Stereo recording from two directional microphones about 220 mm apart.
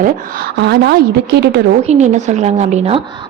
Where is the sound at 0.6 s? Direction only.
50° right (ahead or behind).